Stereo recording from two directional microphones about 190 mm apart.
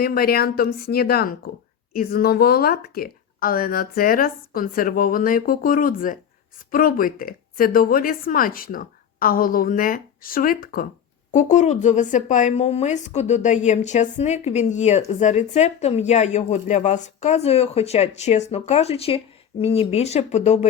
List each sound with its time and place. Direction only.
0.0 s speech: 55° left (ahead or behind)
11.3 s speech: 40° left (ahead or behind)